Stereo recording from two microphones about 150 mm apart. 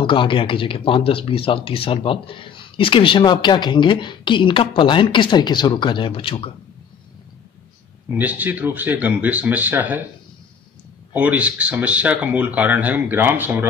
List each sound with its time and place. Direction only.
0.0 s speech: 35° left (ahead or behind)
8.1 s speech: 10° right (ahead or behind)
11.1 s speech: 10° right (ahead or behind)